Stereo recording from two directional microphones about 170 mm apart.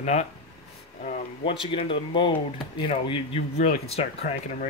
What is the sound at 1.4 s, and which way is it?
Speech, 30° left (ahead or behind).